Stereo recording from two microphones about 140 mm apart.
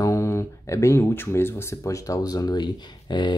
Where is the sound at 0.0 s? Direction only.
20° left (ahead or behind).